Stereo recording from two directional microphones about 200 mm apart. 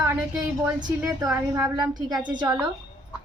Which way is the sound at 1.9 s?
20° right (ahead or behind).